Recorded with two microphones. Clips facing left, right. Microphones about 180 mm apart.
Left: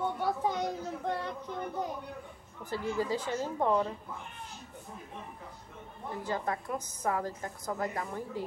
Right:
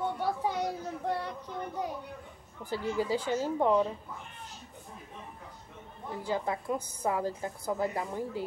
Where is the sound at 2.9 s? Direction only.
5° right (ahead or behind).